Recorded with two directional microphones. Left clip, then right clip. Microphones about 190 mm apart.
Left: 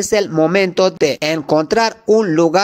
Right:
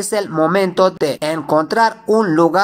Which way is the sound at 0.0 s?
35° left (ahead or behind).